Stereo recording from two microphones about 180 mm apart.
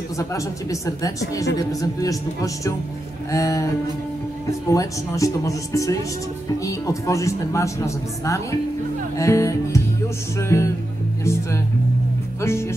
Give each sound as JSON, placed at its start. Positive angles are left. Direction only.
{"t": 0.2, "sound": "speech", "side_deg": 15}
{"t": 12.4, "sound": "speech", "side_deg": 15}